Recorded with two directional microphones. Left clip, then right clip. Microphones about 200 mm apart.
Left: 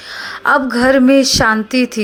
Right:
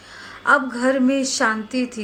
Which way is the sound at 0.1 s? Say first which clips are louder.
Left 4 dB; 40° left (ahead or behind).